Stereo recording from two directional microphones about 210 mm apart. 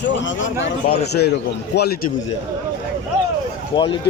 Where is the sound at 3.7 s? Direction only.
25° left (ahead or behind).